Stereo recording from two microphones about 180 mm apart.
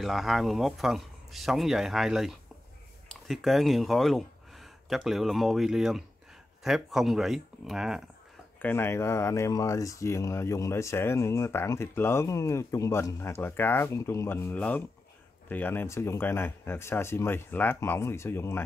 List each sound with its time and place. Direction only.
0.0 s speech: centre (ahead or behind)
8.5 s speech: 10° left (ahead or behind)